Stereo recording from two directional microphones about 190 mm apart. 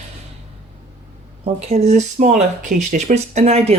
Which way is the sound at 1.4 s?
35° right (ahead or behind).